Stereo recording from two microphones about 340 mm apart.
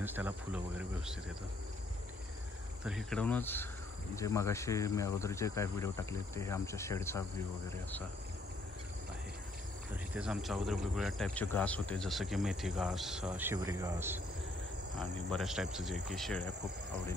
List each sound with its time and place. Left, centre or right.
0.0 s speech: centre
2.8 s speech: centre
10.1 s speech: centre